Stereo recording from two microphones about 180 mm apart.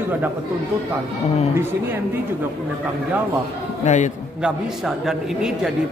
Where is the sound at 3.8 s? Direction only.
40° left (ahead or behind).